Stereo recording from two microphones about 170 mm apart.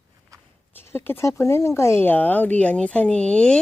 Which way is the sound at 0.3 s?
20° right (ahead or behind).